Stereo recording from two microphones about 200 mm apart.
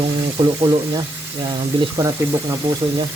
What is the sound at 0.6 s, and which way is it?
Speech, 25° right (ahead or behind).